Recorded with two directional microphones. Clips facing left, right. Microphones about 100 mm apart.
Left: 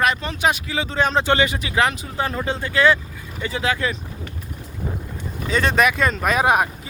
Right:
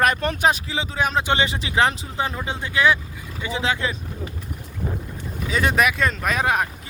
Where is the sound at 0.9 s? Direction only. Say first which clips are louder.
Left 3 dB; 5° right (ahead or behind).